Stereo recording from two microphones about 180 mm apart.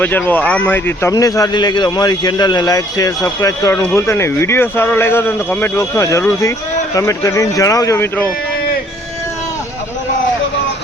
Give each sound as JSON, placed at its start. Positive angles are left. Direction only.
{"t": 0.0, "sound": "a man's voice", "side_deg": 10}